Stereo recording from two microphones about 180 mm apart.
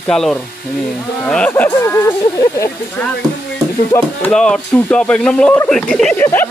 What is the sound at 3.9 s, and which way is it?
Speech, 10° left (ahead or behind).